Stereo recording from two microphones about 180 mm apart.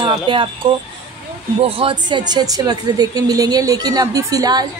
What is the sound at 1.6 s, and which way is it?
A woman's voice, 30° right (ahead or behind).